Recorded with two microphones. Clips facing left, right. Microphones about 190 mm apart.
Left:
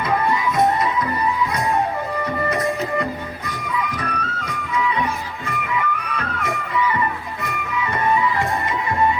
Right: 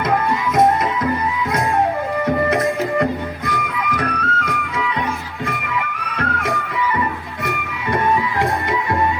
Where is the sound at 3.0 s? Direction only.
60° right (ahead or behind).